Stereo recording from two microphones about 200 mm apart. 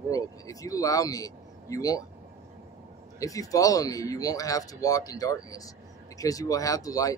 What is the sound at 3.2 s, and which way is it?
Speech, 15° left (ahead or behind).